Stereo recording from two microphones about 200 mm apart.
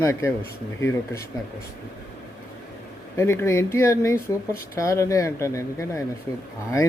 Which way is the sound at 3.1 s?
15° left (ahead or behind).